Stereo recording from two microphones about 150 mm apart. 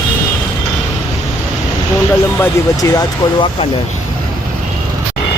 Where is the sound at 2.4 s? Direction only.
20° left (ahead or behind).